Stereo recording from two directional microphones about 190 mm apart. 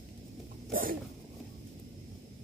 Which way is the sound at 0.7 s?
45° right (ahead or behind).